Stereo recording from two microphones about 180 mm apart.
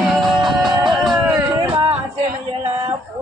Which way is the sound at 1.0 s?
Centre (ahead or behind).